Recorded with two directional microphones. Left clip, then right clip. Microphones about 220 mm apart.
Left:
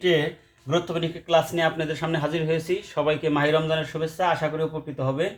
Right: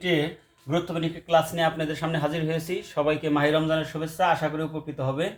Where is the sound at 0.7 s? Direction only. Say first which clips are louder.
Left 2 dB; 35° left (ahead or behind).